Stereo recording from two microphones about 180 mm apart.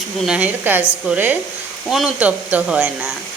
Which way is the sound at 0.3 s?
5° right (ahead or behind).